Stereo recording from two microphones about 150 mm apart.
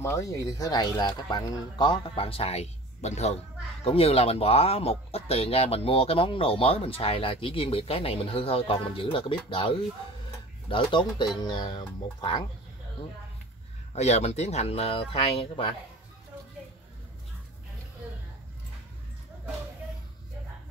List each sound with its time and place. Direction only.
0.0 s speech: 20° left (ahead or behind)
13.9 s speech: 45° left (ahead or behind)